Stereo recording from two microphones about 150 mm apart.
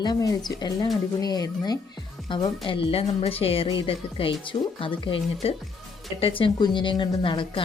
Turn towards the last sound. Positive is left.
turn(degrees=35)  # may be behind; listen again after turning